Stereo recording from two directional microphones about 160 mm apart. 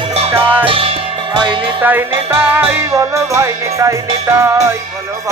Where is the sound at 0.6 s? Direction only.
35° right (ahead or behind).